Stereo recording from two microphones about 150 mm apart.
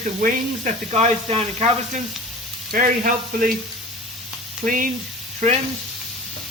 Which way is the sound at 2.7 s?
65° right (ahead or behind).